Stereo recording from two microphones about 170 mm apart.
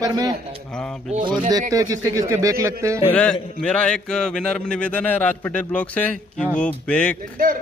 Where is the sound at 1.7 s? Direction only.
20° right (ahead or behind).